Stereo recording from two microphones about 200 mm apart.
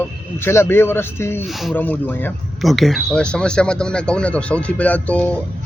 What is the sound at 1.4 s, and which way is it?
Speech, centre (ahead or behind).